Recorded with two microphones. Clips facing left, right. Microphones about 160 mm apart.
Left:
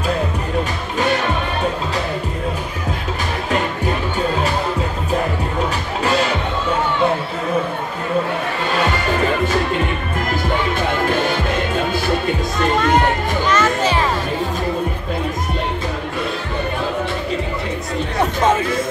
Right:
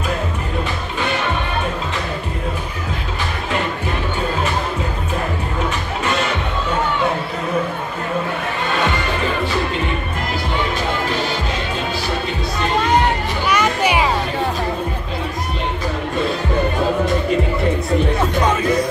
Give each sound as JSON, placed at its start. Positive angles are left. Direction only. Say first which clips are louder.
{"t": 11.1, "sound": "music", "louder": "left 3 dB", "side_deg": 50}
{"t": 13.5, "sound": "music", "louder": "right 1 dB", "side_deg": -15}